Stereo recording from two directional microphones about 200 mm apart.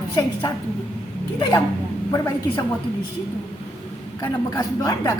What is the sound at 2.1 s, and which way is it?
Speech, 15° left (ahead or behind).